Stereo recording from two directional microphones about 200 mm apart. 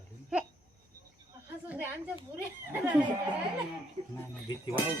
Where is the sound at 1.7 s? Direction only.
10° right (ahead or behind).